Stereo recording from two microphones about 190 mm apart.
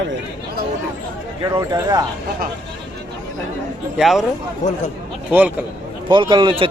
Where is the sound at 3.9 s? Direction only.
Centre (ahead or behind).